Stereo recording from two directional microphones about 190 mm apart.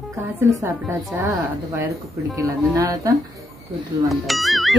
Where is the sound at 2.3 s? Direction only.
15° right (ahead or behind).